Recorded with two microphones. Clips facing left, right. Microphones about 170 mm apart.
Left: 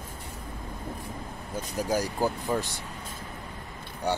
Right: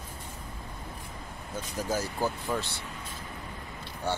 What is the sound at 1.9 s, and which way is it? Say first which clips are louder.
Speech: left 3 dB; 15° left (ahead or behind).